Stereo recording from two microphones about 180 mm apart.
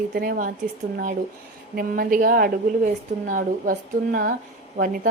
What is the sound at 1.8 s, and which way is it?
A woman's voice, 55° right (ahead or behind).